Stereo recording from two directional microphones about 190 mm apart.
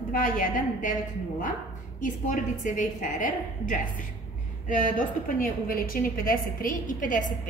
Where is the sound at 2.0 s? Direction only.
45° left (ahead or behind).